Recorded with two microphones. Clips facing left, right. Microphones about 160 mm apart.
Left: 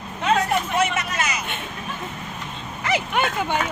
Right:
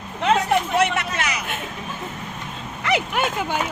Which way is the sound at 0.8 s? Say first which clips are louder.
Right 1 dB; 65° right (ahead or behind).